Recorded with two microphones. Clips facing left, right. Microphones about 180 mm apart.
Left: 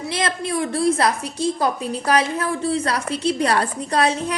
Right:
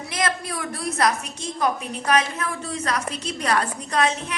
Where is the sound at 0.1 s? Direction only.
30° left (ahead or behind).